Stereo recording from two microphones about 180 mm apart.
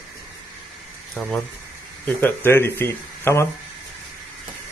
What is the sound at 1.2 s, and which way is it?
Speech, 10° left (ahead or behind).